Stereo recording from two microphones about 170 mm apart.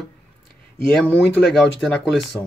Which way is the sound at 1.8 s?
Centre (ahead or behind).